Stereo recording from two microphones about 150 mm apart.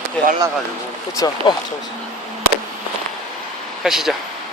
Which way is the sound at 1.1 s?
25° left (ahead or behind).